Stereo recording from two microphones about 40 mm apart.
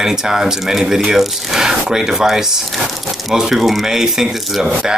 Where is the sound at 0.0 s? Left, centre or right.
Centre.